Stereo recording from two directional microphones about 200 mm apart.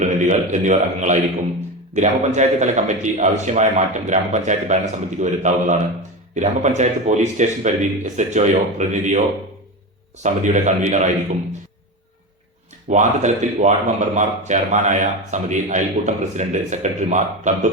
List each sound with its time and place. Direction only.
0.0 s a man's voice: 35° right (ahead or behind)
10.2 s a man's voice: 40° right (ahead or behind)
12.9 s a man's voice: 35° right (ahead or behind)